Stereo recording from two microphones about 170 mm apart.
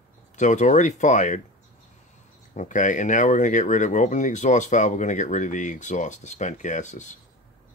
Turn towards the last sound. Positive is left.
turn(degrees=45)  # may be behind; listen again after turning